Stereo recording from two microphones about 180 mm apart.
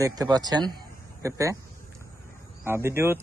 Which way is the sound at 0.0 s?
20° right (ahead or behind).